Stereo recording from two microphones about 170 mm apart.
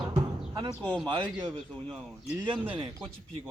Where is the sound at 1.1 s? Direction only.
30° right (ahead or behind).